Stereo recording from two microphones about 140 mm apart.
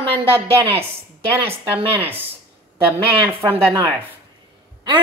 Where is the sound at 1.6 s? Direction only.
40° right (ahead or behind).